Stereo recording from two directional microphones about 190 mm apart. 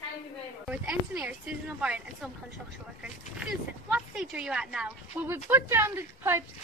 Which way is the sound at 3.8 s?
5° right (ahead or behind).